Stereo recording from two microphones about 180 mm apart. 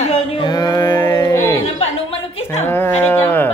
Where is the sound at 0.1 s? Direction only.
25° left (ahead or behind).